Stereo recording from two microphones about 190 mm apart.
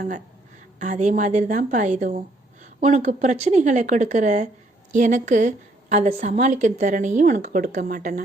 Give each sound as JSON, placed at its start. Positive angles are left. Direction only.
{"t": 0.8, "sound": "a woman's voice", "side_deg": -40}